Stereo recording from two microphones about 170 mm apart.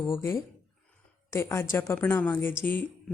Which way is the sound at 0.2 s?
15° left (ahead or behind).